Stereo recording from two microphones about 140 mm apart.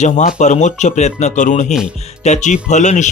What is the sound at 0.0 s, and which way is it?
Speech, 60° left (ahead or behind).